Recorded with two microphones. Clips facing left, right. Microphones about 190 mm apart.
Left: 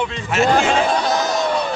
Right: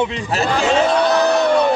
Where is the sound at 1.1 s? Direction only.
65° right (ahead or behind).